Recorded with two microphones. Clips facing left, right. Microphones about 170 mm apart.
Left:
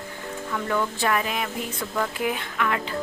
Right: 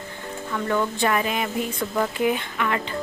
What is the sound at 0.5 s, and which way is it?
A woman's voice, centre (ahead or behind).